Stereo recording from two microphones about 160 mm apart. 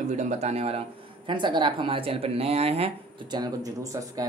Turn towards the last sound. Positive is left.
turn(degrees=-40)  # may be behind; listen again after turning